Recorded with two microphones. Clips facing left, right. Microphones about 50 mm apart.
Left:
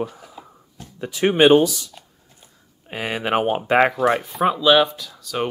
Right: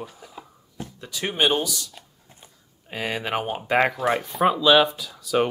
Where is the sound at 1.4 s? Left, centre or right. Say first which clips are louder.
Left 9 dB; left.